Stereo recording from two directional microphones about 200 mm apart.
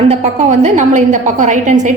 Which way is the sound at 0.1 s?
35° right (ahead or behind).